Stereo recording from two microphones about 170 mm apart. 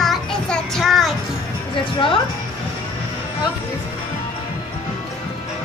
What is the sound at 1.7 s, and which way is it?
Speech, 30° left (ahead or behind).